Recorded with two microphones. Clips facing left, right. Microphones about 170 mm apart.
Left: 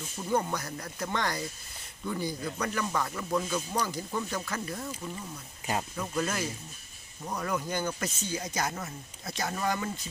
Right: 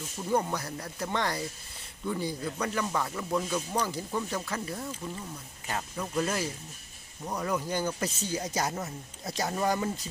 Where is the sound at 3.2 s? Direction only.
5° right (ahead or behind).